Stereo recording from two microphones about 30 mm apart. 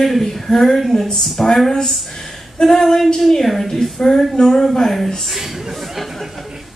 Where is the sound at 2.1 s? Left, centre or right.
Centre.